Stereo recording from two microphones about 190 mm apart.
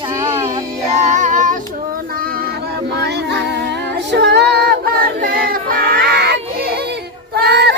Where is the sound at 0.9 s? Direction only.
40° right (ahead or behind).